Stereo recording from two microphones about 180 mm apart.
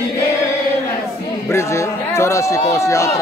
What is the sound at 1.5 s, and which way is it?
A man's voice, 15° left (ahead or behind).